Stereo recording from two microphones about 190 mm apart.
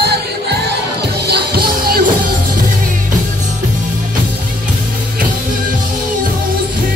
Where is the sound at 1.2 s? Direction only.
55° right (ahead or behind).